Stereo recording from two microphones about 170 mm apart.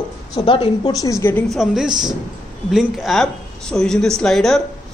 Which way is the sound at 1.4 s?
Centre (ahead or behind).